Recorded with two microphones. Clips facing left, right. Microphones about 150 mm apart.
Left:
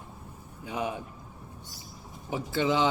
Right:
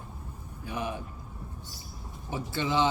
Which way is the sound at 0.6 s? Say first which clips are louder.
Left 2 dB; 20° left (ahead or behind).